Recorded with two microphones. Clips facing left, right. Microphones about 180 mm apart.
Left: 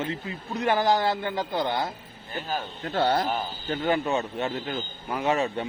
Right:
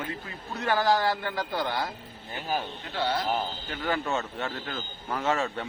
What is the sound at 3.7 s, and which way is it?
Speech, 20° left (ahead or behind).